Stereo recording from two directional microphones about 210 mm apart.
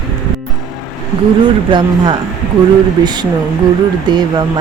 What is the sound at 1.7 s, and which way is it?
Speech, 25° right (ahead or behind).